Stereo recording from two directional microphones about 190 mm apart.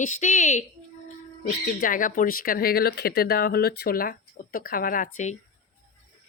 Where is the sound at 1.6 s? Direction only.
45° left (ahead or behind).